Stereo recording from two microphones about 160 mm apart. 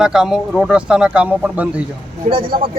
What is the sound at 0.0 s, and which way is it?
Speech, 5° right (ahead or behind).